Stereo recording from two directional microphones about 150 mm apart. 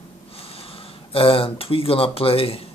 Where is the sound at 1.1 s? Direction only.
40° left (ahead or behind).